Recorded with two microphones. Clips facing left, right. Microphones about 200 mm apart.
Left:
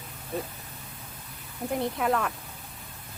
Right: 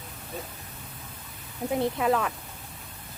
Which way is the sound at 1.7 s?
Centre (ahead or behind).